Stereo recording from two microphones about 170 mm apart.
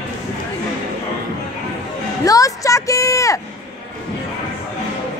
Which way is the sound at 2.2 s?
20° left (ahead or behind).